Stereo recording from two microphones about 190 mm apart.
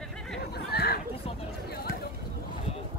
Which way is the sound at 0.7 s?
55° left (ahead or behind).